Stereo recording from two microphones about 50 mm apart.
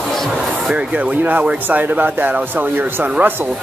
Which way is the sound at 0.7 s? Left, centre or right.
Right.